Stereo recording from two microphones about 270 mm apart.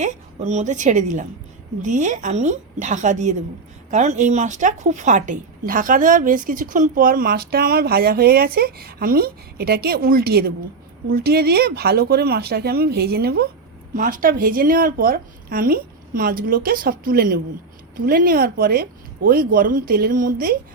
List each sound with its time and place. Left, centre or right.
0.0 s a woman's voice: right